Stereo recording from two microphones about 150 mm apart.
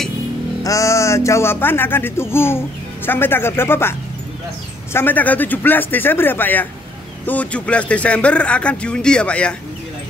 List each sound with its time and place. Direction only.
0.7 s speech: 20° left (ahead or behind)
4.9 s speech: 10° left (ahead or behind)